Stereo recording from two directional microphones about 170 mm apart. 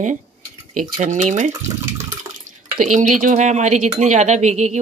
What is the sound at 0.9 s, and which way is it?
Speech, 45° right (ahead or behind).